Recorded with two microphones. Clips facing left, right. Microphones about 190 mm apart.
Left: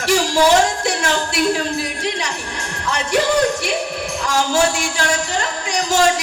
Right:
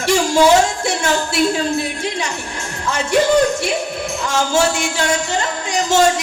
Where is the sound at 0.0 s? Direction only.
25° right (ahead or behind).